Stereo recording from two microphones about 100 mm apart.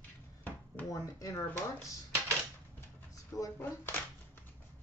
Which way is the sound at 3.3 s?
35° left (ahead or behind).